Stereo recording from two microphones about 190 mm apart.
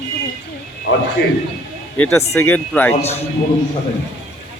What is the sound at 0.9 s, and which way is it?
Speech, 75° left (ahead or behind).